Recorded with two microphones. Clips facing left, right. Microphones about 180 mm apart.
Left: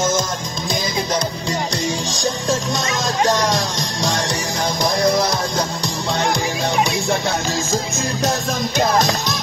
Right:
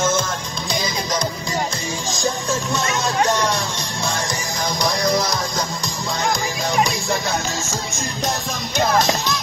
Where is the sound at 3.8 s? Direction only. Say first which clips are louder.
Left 3 dB; 90° left.